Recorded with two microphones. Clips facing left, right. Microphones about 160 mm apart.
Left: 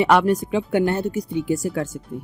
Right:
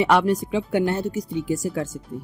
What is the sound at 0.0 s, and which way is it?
A woman's voice, 55° left (ahead or behind).